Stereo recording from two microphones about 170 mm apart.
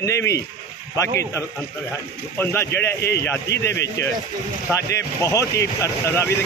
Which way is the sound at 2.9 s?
75° left (ahead or behind).